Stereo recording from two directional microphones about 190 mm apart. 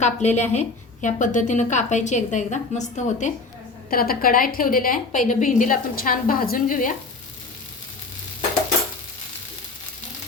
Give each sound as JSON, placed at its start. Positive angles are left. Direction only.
{"t": 0.0, "sound": "a woman's voice", "side_deg": 35}
{"t": 3.8, "sound": "a woman's voice", "side_deg": 50}